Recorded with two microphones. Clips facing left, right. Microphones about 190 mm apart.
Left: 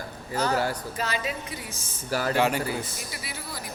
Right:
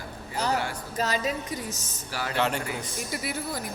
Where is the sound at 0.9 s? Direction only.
40° right (ahead or behind).